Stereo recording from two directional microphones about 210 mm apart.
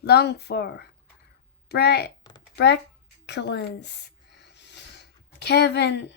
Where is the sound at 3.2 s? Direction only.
55° left (ahead or behind).